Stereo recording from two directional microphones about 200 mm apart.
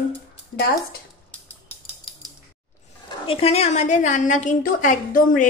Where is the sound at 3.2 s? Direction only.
30° left (ahead or behind).